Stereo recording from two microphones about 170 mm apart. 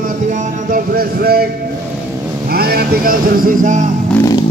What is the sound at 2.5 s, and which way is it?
Vehicle, 65° right (ahead or behind).